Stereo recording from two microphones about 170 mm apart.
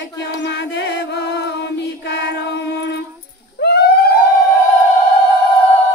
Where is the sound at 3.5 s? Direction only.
80° left.